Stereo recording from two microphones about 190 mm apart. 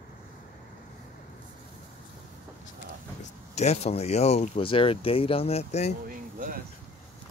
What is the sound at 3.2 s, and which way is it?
Speech, 35° left (ahead or behind).